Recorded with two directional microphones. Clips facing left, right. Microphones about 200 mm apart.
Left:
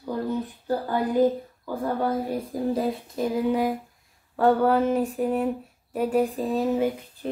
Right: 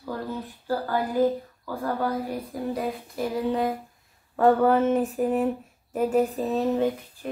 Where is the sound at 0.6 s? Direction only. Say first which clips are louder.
Even; 20° left (ahead or behind).